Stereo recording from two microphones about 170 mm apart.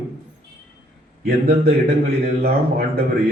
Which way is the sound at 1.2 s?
65° right (ahead or behind).